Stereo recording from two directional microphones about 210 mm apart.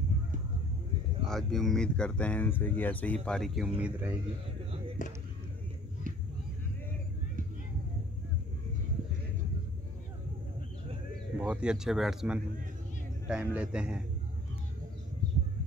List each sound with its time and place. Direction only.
1.2 s speech: centre (ahead or behind)
5.0 s speech: 35° left (ahead or behind)
11.3 s speech: 5° right (ahead or behind)